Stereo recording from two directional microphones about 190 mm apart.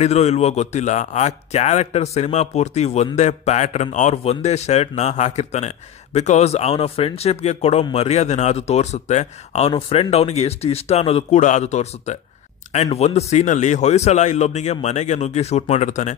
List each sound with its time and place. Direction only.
0.0 s speech: 35° left (ahead or behind)